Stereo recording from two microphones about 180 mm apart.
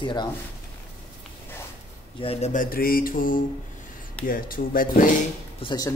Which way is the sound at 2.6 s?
55° left (ahead or behind).